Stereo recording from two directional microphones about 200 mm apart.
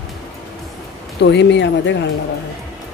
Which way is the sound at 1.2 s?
60° left (ahead or behind).